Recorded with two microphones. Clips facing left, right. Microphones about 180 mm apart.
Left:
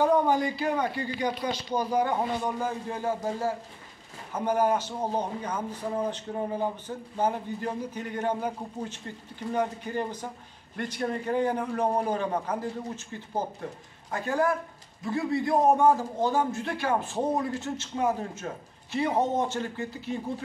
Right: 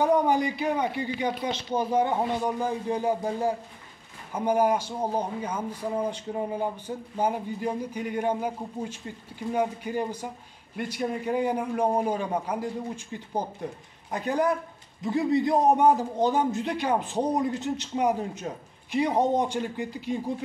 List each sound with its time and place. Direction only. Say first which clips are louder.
0.0 s a man's voice: right 1 dB; 15° right (ahead or behind)